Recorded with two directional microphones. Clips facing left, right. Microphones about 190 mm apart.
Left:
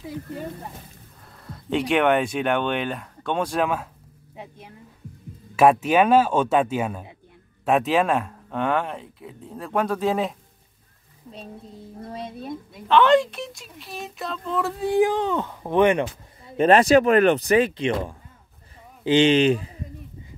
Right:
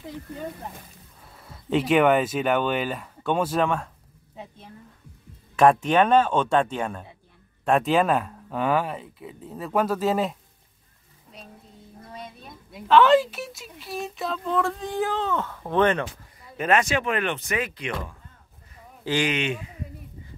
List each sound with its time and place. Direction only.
1.2 s speech: 5° right (ahead or behind)
4.4 s speech: 15° left (ahead or behind)
11.3 s speech: 30° left (ahead or behind)
12.7 s speech: centre (ahead or behind); by 16.1 s 15° left (ahead or behind)
16.4 s speech: 30° left (ahead or behind)